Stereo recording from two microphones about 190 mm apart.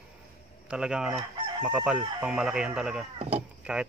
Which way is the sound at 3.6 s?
5° right (ahead or behind).